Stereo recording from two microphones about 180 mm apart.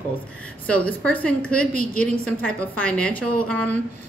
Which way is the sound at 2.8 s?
5° left (ahead or behind).